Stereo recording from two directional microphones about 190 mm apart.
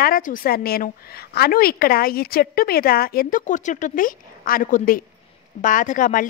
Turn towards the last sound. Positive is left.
turn(degrees=45)  # may be behind; listen again after turning